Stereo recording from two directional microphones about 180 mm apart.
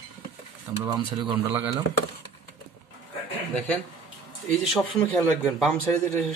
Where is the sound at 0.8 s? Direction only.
25° right (ahead or behind).